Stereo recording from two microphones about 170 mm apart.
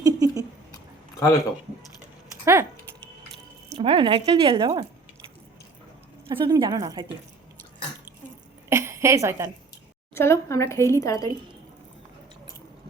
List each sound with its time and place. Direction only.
0.0 s a sound: 20° right (ahead or behind)
2.4 s speech: 15° right (ahead or behind)
3.8 s speech: 30° right (ahead or behind)
6.2 s a woman's voice: 30° right (ahead or behind)
8.7 s a sound: 15° right (ahead or behind)
10.2 s a woman's voice: 15° left (ahead or behind)